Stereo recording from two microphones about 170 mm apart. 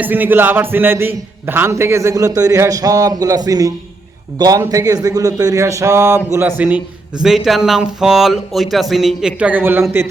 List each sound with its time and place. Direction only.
0.0 s speech: 10° right (ahead or behind)